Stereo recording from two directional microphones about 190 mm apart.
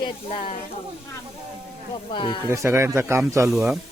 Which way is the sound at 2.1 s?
25° left (ahead or behind).